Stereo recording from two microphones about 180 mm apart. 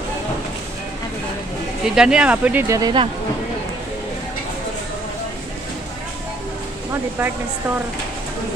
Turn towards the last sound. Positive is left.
turn(degrees=-10)  # may be behind; listen again after turning